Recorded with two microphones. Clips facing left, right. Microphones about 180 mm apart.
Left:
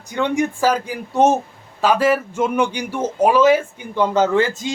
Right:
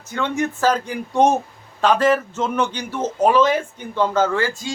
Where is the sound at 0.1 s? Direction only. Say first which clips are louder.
Left 3 dB; 15° left (ahead or behind).